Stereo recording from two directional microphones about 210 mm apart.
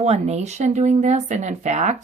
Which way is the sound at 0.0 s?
30° right (ahead or behind).